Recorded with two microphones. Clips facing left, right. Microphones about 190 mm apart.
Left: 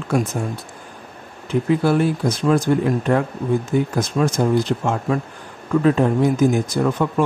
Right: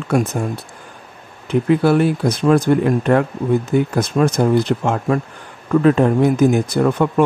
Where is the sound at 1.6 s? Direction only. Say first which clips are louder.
Right 3 dB; 65° right (ahead or behind).